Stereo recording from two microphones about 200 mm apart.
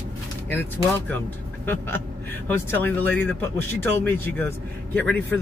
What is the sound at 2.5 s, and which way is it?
Speech, 10° left (ahead or behind).